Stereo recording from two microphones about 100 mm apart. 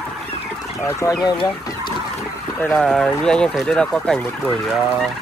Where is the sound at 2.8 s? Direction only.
5° left (ahead or behind).